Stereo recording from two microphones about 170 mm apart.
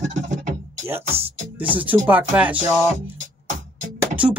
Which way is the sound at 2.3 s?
10° right (ahead or behind).